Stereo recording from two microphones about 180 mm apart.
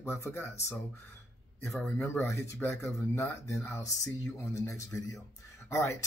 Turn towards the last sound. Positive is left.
turn(degrees=15)  # may be behind; listen again after turning